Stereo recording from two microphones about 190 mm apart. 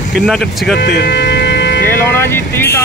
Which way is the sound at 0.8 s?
60° left (ahead or behind).